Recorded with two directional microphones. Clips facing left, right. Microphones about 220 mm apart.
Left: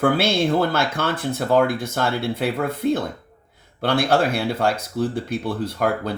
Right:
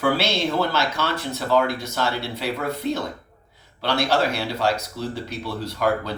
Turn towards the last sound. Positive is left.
turn(degrees=50)  # may be behind; listen again after turning